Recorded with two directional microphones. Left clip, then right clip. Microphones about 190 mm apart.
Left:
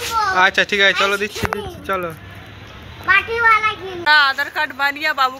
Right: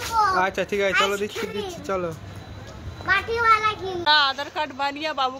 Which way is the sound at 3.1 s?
20° left (ahead or behind).